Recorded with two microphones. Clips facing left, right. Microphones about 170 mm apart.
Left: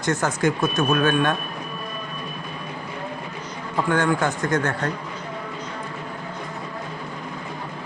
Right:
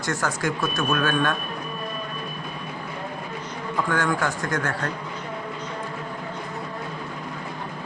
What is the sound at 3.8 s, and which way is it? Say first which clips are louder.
Speech: left 4 dB; 20° left (ahead or behind).